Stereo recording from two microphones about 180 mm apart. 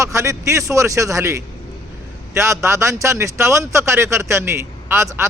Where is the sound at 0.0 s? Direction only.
15° right (ahead or behind).